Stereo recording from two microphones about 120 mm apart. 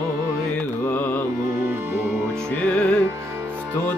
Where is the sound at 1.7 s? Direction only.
20° right (ahead or behind).